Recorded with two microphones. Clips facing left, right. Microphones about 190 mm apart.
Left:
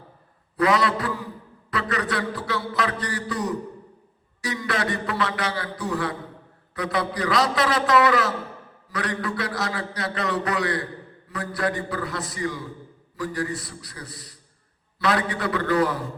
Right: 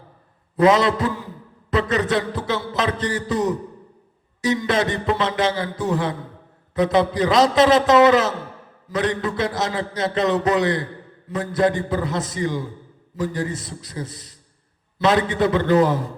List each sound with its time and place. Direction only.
0.5 s a man's voice: 20° right (ahead or behind)